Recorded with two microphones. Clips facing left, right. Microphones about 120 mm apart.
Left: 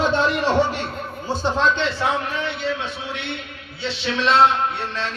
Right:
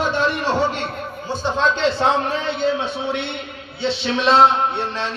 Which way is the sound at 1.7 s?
35° right (ahead or behind).